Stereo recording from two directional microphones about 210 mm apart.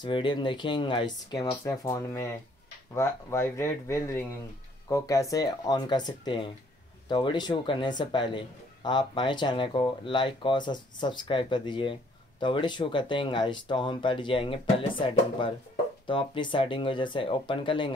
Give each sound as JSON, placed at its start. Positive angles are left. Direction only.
{"t": 0.0, "sound": "a man's voice", "side_deg": 20}